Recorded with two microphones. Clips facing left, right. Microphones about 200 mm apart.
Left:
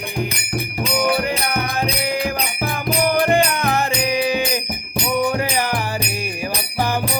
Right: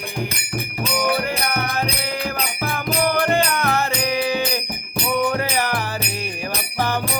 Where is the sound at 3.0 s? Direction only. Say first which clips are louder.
Left 3 dB; 15° left (ahead or behind).